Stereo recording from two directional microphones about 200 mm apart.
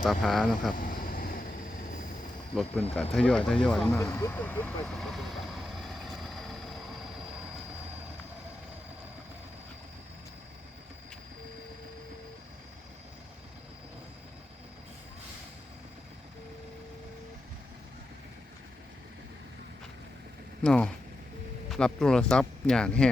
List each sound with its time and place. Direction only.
0.0 s speech: centre (ahead or behind)
0.8 s vehicle: 45° left (ahead or behind)
2.9 s speech: 5° left (ahead or behind)
3.9 s vehicle: 15° left (ahead or behind)
20.7 s speech: 5° left (ahead or behind)